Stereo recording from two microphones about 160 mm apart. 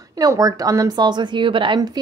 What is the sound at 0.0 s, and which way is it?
A woman's voice, 20° right (ahead or behind).